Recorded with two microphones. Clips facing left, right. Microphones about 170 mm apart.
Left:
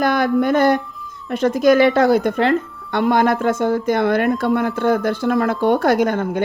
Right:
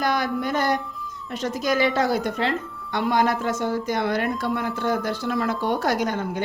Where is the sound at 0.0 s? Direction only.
55° left (ahead or behind).